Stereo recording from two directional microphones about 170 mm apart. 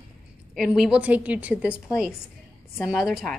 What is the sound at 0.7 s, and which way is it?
A woman's voice, 5° right (ahead or behind).